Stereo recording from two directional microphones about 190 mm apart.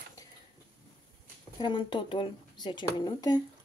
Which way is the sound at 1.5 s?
25° left (ahead or behind).